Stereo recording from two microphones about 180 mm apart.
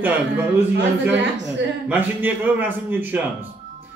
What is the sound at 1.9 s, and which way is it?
A man's voice, 10° right (ahead or behind).